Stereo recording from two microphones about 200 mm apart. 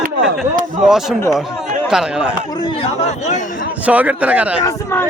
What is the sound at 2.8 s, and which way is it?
Speech, 35° left (ahead or behind).